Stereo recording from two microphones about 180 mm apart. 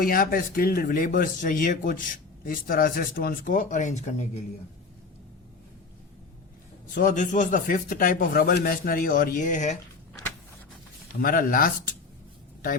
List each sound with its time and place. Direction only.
0.0 s speech: 55° left (ahead or behind)
6.9 s speech: 45° left (ahead or behind)
11.2 s speech: 50° left (ahead or behind)